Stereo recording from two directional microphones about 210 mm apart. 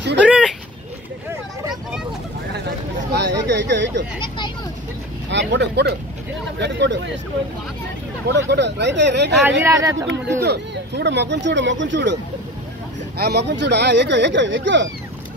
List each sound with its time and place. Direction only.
0.2 s a sound: 5° right (ahead or behind)
3.1 s a sound: 55° right (ahead or behind)
5.3 s speech: 55° right (ahead or behind)
8.3 s speech: 55° right (ahead or behind)
9.6 s a man's voice: 15° right (ahead or behind)
10.4 s speech: 50° right (ahead or behind)
13.2 s speech: 50° right (ahead or behind)